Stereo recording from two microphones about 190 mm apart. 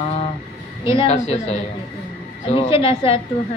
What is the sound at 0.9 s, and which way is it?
A woman's voice, 35° left (ahead or behind).